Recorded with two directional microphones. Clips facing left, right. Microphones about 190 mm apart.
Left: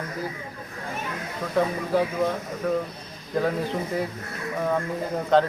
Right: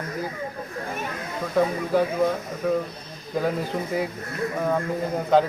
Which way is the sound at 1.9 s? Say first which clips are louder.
Right 2 dB; centre (ahead or behind).